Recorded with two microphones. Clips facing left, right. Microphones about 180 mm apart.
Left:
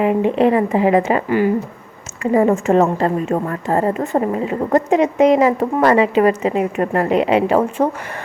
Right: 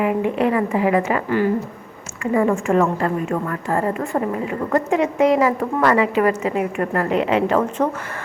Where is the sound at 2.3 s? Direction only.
25° left (ahead or behind).